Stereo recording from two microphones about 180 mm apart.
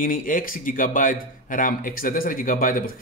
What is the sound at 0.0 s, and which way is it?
Speech, 50° left (ahead or behind).